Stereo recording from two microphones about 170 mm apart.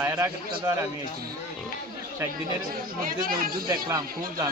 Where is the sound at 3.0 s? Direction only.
55° right (ahead or behind).